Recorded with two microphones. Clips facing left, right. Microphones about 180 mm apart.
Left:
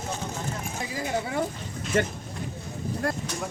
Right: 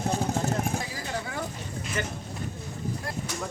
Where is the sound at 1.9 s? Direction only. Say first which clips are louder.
Left 8 dB; 50° left (ahead or behind).